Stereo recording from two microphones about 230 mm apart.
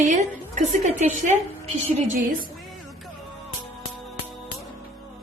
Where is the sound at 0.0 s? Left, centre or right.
Right.